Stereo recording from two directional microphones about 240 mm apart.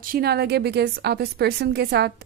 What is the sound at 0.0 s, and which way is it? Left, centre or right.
A woman's voice, right.